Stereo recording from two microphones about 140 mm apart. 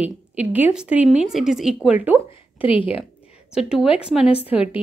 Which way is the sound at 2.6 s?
40° left (ahead or behind).